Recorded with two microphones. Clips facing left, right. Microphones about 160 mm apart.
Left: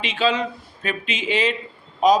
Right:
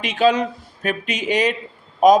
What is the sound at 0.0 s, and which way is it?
A man's voice, 45° right (ahead or behind).